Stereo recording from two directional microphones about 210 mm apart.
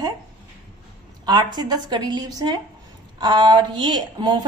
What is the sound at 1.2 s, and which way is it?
A woman's voice, 20° right (ahead or behind).